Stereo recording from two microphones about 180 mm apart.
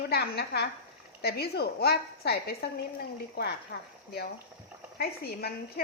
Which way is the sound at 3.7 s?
65° left (ahead or behind).